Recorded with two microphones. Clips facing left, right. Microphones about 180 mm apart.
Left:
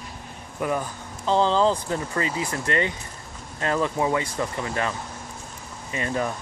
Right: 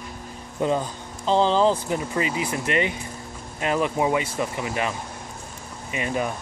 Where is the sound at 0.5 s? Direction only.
25° right (ahead or behind).